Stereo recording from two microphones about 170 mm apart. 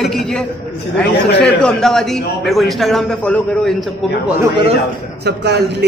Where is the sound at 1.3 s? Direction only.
90° left.